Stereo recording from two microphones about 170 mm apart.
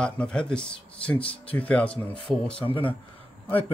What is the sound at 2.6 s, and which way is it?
Speech, 30° left (ahead or behind).